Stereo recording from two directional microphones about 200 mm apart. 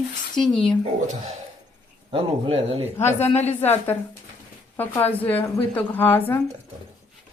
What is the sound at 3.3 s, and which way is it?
Speech, 35° left (ahead or behind).